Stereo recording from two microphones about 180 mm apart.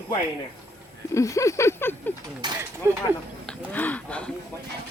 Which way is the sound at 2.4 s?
25° right (ahead or behind).